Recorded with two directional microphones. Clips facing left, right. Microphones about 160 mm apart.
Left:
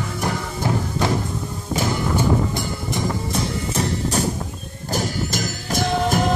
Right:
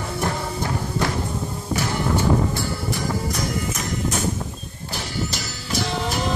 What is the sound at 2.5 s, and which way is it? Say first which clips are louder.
Music: left 1 dB; 25° left (ahead or behind).